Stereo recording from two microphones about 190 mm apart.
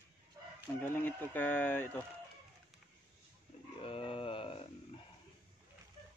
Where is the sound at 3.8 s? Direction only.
30° left (ahead or behind).